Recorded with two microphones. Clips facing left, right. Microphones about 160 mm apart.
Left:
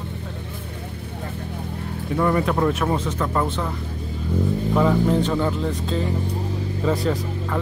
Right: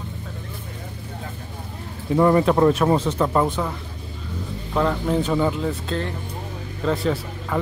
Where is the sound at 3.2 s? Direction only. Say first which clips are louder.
Right 3 dB; 20° right (ahead or behind).